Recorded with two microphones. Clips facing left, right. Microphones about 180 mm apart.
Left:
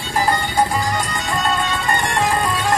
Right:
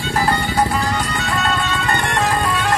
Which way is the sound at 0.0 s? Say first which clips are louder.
Right 1 dB; 10° left (ahead or behind).